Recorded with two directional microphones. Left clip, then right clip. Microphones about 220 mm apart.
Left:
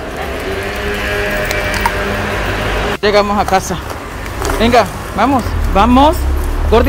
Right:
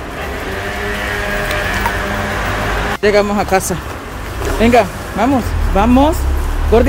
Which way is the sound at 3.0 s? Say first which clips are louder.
Left 1 dB; 20° right (ahead or behind).